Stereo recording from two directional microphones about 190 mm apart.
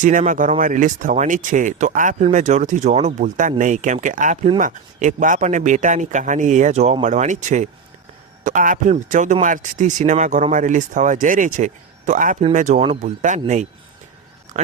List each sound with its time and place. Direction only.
0.0 s speech: 40° right (ahead or behind)
14.5 s speech: 40° right (ahead or behind)